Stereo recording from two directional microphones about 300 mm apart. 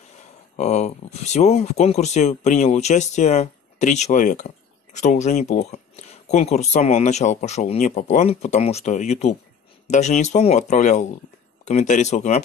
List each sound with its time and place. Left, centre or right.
0.2 s speech: left